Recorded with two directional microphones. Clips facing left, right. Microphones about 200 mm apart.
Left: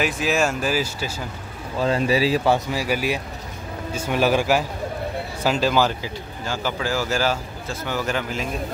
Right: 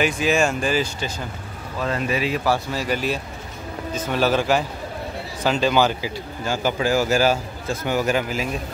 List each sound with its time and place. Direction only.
0.0 s speech: centre (ahead or behind)
1.8 s speech: 30° left (ahead or behind)
2.7 s speech: 10° left (ahead or behind)
6.4 s speech: 15° right (ahead or behind)